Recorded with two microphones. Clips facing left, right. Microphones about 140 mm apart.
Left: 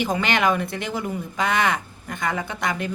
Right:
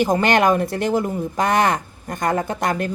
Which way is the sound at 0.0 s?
45° right (ahead or behind).